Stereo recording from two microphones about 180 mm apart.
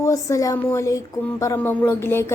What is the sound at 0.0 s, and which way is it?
Speech, 15° left (ahead or behind).